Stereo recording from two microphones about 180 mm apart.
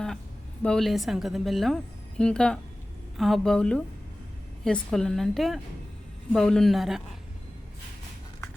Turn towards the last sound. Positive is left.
turn(degrees=0)  # may be behind; listen again after turning